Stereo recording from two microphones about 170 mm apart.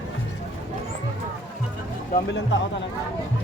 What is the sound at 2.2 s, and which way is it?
Speech, 90° left.